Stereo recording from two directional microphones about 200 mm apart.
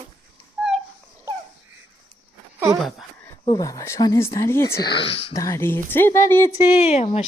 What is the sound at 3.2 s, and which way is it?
Speech, 15° left (ahead or behind).